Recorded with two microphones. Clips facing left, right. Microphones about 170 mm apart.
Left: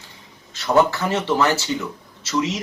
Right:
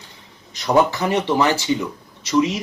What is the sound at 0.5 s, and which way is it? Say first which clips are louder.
Speech: even; 15° right (ahead or behind).